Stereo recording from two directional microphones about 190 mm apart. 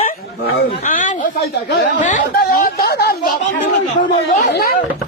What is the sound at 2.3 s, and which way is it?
Speech, 50° left (ahead or behind).